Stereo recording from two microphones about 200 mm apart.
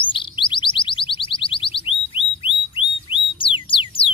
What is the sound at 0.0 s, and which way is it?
Alarm, 25° left (ahead or behind).